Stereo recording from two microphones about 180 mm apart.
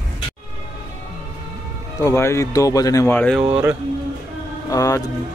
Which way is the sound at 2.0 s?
15° left (ahead or behind).